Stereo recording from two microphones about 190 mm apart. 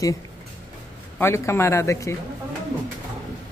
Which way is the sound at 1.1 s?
15° left (ahead or behind).